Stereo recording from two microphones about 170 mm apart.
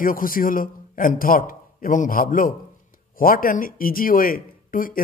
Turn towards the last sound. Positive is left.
turn(degrees=55)  # may be behind; listen again after turning